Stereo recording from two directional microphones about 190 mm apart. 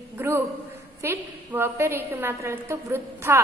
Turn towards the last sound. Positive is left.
turn(degrees=-15)  # may be behind; listen again after turning